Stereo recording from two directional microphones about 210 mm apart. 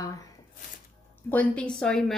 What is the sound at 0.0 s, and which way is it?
Squish, 15° left (ahead or behind).